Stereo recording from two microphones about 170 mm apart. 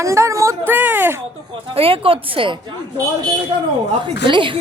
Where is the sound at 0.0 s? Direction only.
15° right (ahead or behind).